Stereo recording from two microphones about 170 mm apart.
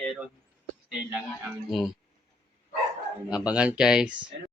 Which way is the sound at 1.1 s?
5° right (ahead or behind).